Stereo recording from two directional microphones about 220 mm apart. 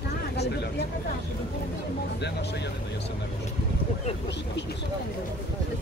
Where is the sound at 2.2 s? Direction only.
50° left (ahead or behind).